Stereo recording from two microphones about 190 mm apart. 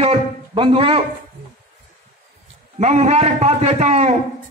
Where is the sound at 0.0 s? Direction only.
30° right (ahead or behind).